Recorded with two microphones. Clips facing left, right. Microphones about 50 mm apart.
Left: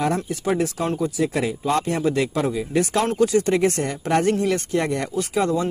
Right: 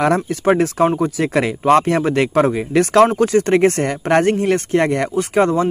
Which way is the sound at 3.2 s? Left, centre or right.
Right.